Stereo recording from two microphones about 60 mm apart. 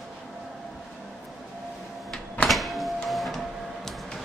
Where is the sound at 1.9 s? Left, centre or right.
Centre.